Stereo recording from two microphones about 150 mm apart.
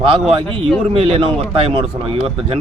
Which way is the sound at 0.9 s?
40° right (ahead or behind).